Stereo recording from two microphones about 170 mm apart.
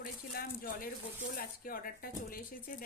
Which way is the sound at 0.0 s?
55° left (ahead or behind).